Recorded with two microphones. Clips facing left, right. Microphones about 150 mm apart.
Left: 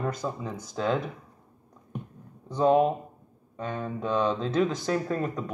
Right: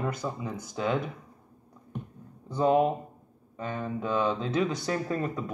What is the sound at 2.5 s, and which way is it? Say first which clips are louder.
Speech: left 2 dB; centre (ahead or behind).